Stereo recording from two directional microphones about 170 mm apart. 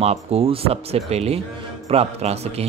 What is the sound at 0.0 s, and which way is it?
A man's voice, 35° right (ahead or behind).